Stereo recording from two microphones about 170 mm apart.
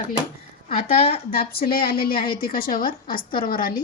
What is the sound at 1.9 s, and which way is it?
A woman's voice, 60° left (ahead or behind).